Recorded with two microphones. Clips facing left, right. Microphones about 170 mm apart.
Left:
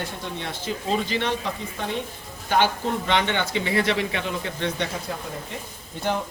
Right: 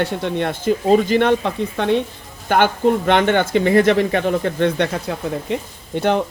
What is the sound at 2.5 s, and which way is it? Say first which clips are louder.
Speech: right 7 dB; 55° right (ahead or behind).